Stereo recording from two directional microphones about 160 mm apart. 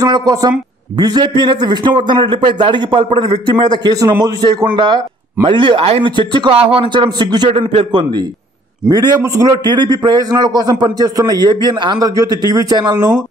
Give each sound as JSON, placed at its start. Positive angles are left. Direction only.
{"t": 0.0, "sound": "a man's voice", "side_deg": -25}